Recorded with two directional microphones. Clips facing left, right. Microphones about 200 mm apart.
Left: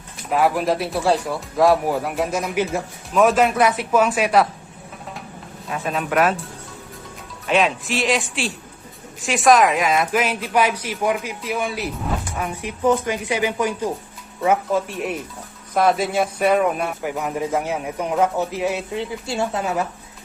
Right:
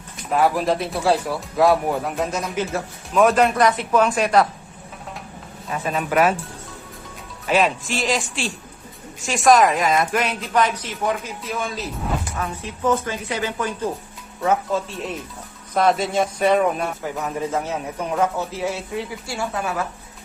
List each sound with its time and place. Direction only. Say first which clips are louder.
0.3 s speech: even; centre (ahead or behind)
5.6 s speech: even; centre (ahead or behind)
7.4 s speech: even; centre (ahead or behind); by 19.9 s 20° left (ahead or behind)